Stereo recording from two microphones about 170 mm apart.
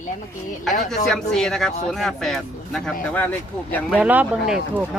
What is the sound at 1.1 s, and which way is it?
Speech, 5° left (ahead or behind).